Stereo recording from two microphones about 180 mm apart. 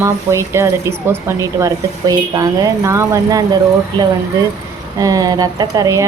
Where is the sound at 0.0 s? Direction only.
15° right (ahead or behind).